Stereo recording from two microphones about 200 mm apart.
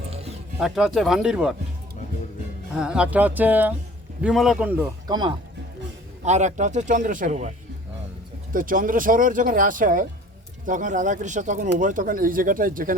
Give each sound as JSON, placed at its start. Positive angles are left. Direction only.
{"t": 0.6, "sound": "speech", "side_deg": 0}
{"t": 2.7, "sound": "speech", "side_deg": -5}
{"t": 5.0, "sound": "speech", "side_deg": -20}
{"t": 6.2, "sound": "speech", "side_deg": -35}
{"t": 8.5, "sound": "speech", "side_deg": -45}